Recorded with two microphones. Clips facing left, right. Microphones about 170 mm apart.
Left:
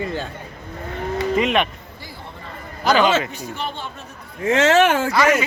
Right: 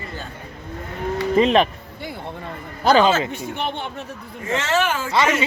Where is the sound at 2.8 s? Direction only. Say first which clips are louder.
Right 2 dB; 30° right (ahead or behind).